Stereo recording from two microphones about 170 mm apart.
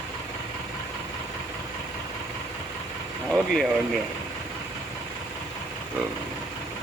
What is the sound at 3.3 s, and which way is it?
Speech, centre (ahead or behind).